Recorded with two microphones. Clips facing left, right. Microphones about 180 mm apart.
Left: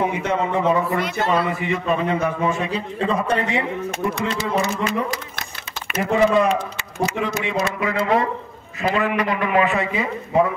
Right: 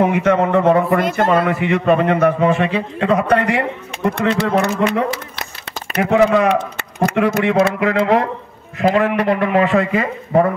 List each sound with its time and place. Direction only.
0.0 s a man's voice: 60° right (ahead or behind)
7.2 s a man's voice: 55° right (ahead or behind)